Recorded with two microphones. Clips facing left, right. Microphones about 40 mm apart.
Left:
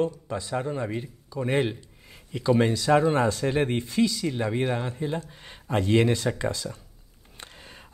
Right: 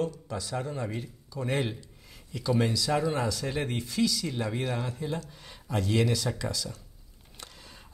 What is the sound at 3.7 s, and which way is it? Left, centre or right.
Speech, left.